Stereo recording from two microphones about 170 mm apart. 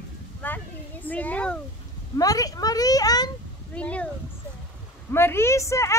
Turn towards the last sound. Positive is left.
turn(degrees=15)  # may be behind; listen again after turning